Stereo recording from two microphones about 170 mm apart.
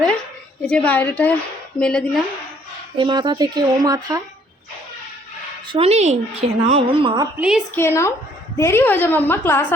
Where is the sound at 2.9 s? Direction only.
25° right (ahead or behind).